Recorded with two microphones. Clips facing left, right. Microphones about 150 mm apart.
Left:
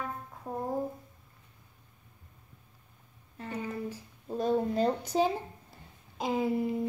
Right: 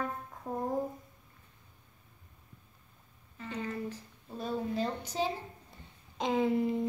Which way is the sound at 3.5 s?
10° left (ahead or behind).